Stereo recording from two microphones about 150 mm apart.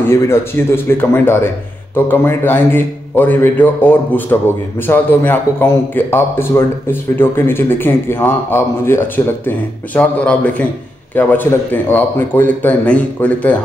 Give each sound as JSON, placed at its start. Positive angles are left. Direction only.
{"t": 0.0, "sound": "a man's voice", "side_deg": 15}